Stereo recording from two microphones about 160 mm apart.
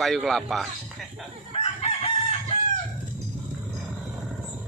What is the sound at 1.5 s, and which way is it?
Chicken, 40° left (ahead or behind).